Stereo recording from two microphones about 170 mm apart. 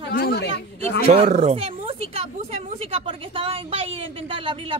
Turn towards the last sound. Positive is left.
turn(degrees=-30)  # may be behind; listen again after turning